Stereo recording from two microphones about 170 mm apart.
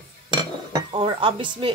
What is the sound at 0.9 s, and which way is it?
Speech, 30° right (ahead or behind).